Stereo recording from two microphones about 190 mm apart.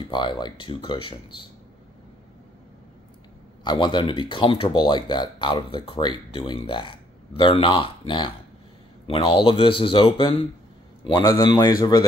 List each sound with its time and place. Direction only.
0.1 s speech: 25° left (ahead or behind)
3.6 s speech: 25° left (ahead or behind)